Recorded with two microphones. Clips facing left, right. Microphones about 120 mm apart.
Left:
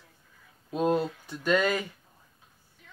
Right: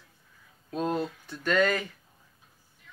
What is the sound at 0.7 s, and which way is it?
Speech, 10° left (ahead or behind).